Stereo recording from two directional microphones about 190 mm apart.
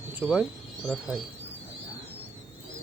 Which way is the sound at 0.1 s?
5° right (ahead or behind).